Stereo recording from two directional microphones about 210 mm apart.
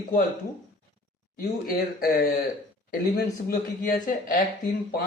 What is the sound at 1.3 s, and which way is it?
Speech, 45° left (ahead or behind).